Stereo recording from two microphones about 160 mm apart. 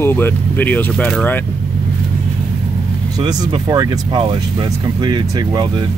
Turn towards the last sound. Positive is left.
turn(degrees=-25)  # may be behind; listen again after turning